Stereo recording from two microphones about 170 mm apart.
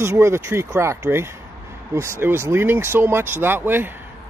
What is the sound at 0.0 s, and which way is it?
Speech, 15° right (ahead or behind).